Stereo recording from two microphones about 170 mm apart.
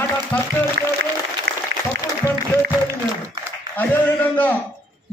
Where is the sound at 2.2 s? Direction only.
20° left (ahead or behind).